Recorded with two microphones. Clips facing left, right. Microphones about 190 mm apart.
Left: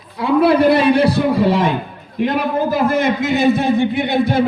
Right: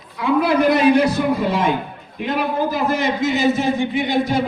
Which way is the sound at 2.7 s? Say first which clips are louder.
Left 4 dB; 55° left (ahead or behind).